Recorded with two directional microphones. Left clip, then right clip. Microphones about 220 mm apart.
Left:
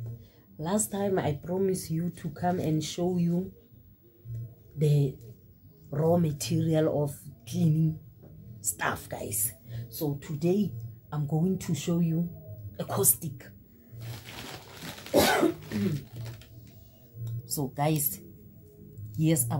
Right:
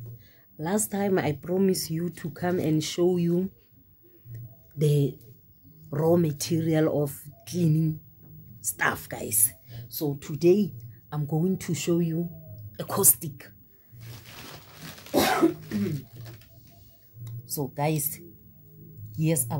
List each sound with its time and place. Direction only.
0.6 s speech: 35° right (ahead or behind)
4.7 s a woman's voice: 45° right (ahead or behind)
17.6 s speech: 30° right (ahead or behind)